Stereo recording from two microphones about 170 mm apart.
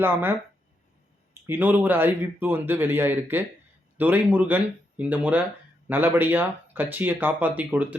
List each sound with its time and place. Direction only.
0.0 s a man's voice: 10° right (ahead or behind)